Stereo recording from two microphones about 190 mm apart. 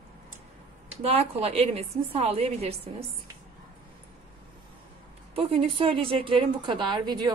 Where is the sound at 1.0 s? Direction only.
30° right (ahead or behind).